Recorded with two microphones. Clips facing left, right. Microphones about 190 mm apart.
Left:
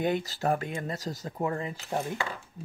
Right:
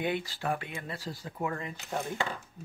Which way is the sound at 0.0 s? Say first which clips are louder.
Left 4 dB; 40° left (ahead or behind).